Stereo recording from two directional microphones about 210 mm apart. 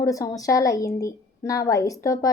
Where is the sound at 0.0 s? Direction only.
15° left (ahead or behind).